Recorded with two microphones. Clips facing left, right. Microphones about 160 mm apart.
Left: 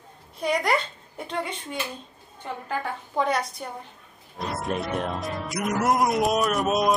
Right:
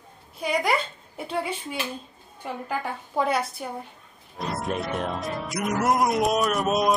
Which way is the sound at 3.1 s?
5° right (ahead or behind).